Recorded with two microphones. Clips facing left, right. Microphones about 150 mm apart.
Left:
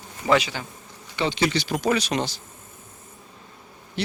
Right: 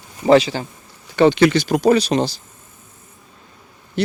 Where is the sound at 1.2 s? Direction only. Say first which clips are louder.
Right 11 dB; 55° right (ahead or behind); by 2.4 s 35° right (ahead or behind).